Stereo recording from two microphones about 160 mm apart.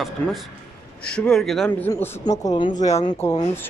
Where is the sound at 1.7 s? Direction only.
15° left (ahead or behind).